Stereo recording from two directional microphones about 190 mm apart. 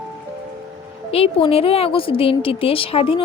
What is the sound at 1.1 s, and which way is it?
A woman's voice, 30° left (ahead or behind).